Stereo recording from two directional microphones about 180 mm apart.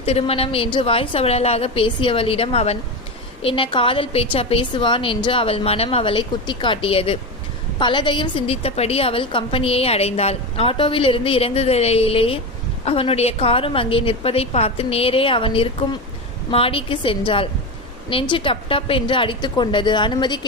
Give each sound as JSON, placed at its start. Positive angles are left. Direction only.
{"t": 0.0, "sound": "a woman's voice", "side_deg": 35}